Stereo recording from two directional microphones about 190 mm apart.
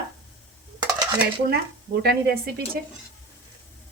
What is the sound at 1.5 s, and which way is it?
Speech, 55° right (ahead or behind).